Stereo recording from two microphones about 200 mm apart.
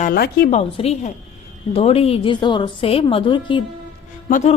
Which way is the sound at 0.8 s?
30° left (ahead or behind).